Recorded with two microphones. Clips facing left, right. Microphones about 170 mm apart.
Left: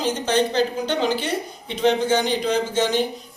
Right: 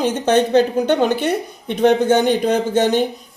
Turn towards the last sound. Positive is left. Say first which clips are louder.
# right 5 dB
turn(degrees=-55)  # may be behind; listen again after turning